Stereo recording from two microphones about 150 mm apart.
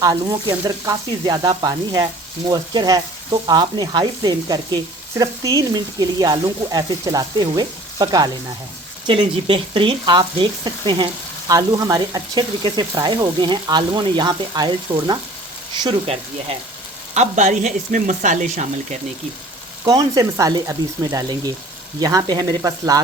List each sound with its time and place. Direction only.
0.0 s speech: 25° right (ahead or behind)
17.2 s speech: 55° right (ahead or behind)
19.8 s speech: 25° right (ahead or behind)